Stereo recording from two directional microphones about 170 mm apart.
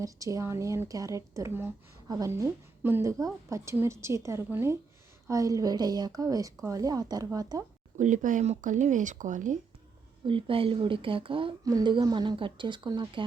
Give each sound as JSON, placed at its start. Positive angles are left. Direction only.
{"t": 0.0, "sound": "a woman's voice", "side_deg": -20}
{"t": 7.9, "sound": "speech", "side_deg": -45}
{"t": 10.2, "sound": "a woman's voice", "side_deg": -30}